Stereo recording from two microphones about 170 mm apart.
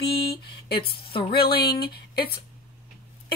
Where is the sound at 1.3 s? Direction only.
65° left (ahead or behind).